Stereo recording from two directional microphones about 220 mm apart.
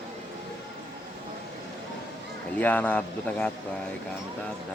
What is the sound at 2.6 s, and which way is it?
Speech, 5° left (ahead or behind).